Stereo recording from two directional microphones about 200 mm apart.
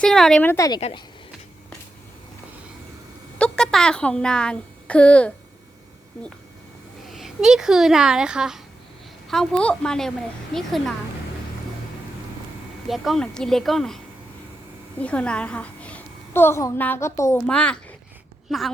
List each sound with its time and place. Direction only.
0.0 s speech: 5° left (ahead or behind)
0.5 s speech: 15° left (ahead or behind)
0.8 s speech: 30° left (ahead or behind)
3.3 s a child's voice: 5° left (ahead or behind)
7.1 s speech: centre (ahead or behind)
12.9 s a woman's voice: centre (ahead or behind)